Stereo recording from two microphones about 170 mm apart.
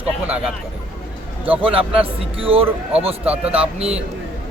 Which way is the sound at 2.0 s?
35° right (ahead or behind).